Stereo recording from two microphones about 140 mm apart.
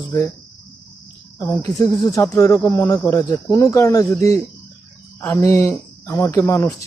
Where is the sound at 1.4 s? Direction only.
25° left (ahead or behind).